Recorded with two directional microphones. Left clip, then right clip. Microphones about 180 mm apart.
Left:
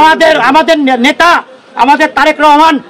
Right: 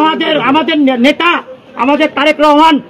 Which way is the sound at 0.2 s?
20° left (ahead or behind).